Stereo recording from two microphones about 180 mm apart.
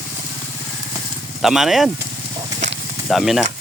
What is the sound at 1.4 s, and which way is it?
Speech, centre (ahead or behind).